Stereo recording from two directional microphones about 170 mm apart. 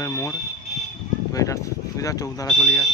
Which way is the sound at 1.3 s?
20° left (ahead or behind).